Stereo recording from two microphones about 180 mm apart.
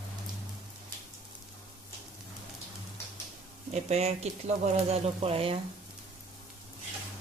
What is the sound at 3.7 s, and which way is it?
Speech, 35° right (ahead or behind).